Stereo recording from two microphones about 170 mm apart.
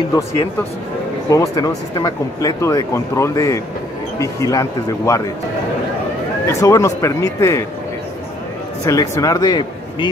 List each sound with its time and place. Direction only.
1.3 s speech: 20° left (ahead or behind)
6.4 s speech: 20° left (ahead or behind)
8.8 s speech: 20° left (ahead or behind)